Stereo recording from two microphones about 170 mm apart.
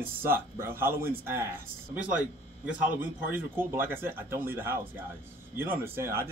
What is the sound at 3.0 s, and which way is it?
Speech, 10° right (ahead or behind).